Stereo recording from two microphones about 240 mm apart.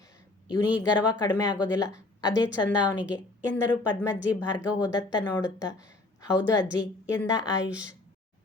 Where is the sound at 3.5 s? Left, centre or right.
Centre.